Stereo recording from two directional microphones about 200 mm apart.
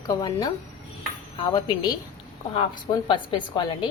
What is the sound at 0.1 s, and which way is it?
A woman's voice, 20° left (ahead or behind).